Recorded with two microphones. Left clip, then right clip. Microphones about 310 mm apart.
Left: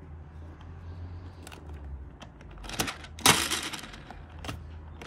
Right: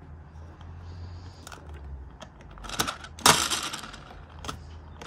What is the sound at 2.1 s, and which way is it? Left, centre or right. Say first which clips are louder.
Typewriter: right 3 dB; centre.